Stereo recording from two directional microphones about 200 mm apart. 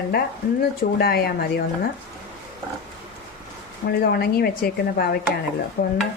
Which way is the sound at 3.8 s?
50° left (ahead or behind).